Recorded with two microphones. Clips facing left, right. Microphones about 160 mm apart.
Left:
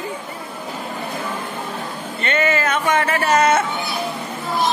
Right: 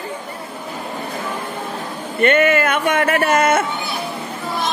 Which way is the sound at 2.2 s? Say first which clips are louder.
Right 5 dB; 55° right (ahead or behind).